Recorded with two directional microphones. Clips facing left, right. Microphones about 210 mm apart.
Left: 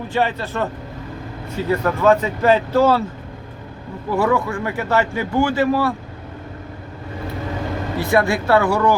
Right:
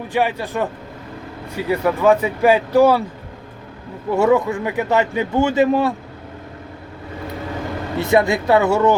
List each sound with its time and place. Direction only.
0.1 s speech: 15° right (ahead or behind)
4.1 s speech: 25° right (ahead or behind)
7.9 s speech: 20° right (ahead or behind)